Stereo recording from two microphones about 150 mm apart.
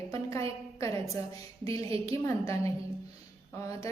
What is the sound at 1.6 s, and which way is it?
A woman's voice, 20° left (ahead or behind).